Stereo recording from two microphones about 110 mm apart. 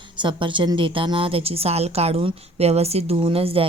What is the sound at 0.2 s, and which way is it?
A woman's voice, 50° right (ahead or behind).